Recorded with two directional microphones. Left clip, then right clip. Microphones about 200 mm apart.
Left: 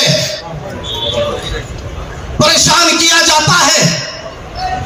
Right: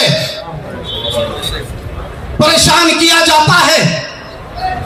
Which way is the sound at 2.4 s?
30° left (ahead or behind).